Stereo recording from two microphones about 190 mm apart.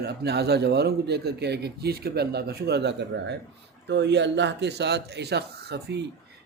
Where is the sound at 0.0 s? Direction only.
60° right (ahead or behind).